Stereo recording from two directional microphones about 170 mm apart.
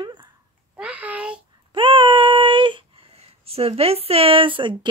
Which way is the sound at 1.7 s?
30° right (ahead or behind).